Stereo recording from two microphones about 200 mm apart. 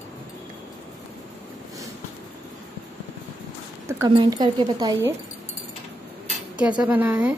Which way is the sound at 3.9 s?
15° right (ahead or behind).